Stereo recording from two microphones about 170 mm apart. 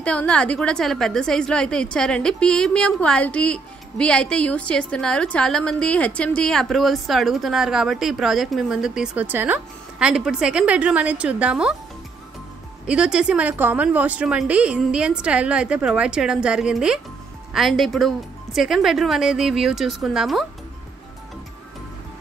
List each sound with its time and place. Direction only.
0.0 s a woman's voice: 5° left (ahead or behind)
12.8 s a woman's voice: 5° right (ahead or behind)